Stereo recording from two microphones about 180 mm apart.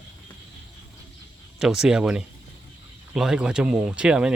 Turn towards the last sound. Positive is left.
turn(degrees=-5)  # may be behind; listen again after turning